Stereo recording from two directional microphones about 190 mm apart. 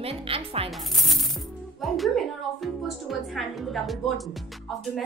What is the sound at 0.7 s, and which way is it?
Speech, centre (ahead or behind).